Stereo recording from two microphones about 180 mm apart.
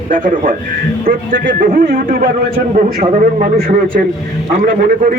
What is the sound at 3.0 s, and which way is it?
Speech, 40° right (ahead or behind).